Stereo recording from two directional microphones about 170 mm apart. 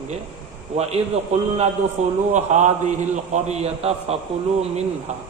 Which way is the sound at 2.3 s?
45° right (ahead or behind).